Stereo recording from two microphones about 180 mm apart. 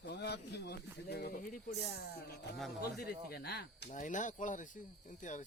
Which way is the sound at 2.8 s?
60° left (ahead or behind).